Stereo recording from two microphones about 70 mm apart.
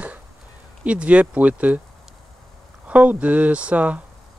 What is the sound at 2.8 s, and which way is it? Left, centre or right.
Speech, centre.